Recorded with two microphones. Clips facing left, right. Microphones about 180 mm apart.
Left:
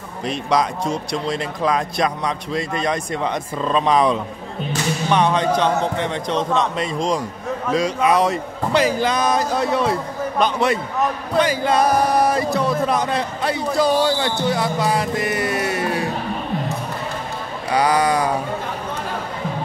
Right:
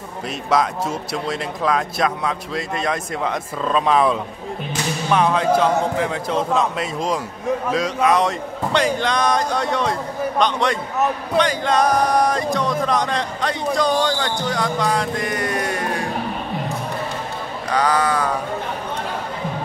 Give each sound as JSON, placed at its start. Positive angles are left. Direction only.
{"t": 0.3, "sound": "speech", "side_deg": 0}
{"t": 17.6, "sound": "speech", "side_deg": 10}